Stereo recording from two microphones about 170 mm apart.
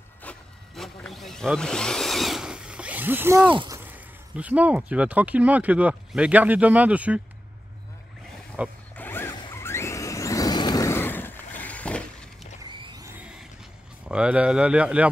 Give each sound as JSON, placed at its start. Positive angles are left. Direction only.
{"t": 0.2, "sound": "speech", "side_deg": 5}
{"t": 3.5, "sound": "a sound", "side_deg": -20}
{"t": 4.4, "sound": "speech", "side_deg": -10}
{"t": 8.6, "sound": "speech", "side_deg": -10}
{"t": 8.9, "sound": "zipper", "side_deg": 10}
{"t": 9.5, "sound": "vehicle", "side_deg": 15}
{"t": 12.8, "sound": "a sound", "side_deg": -25}
{"t": 13.2, "sound": "a sound", "side_deg": -5}
{"t": 14.0, "sound": "speech", "side_deg": -5}